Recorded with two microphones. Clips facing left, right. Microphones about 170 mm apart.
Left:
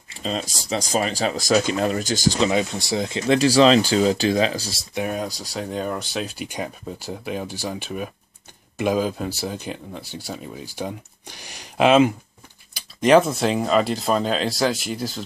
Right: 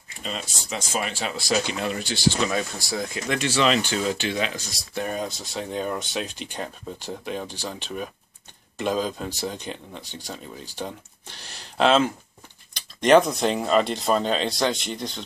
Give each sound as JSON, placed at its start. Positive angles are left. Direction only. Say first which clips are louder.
{"t": 0.1, "sound": "speech", "louder": "left 6 dB", "side_deg": 35}
{"t": 2.4, "sound": "speech", "louder": "left 5 dB", "side_deg": 20}
{"t": 4.9, "sound": "speech", "louder": "left 2 dB", "side_deg": 5}